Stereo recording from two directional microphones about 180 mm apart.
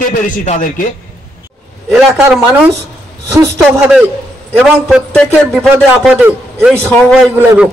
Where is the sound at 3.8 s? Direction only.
5° right (ahead or behind).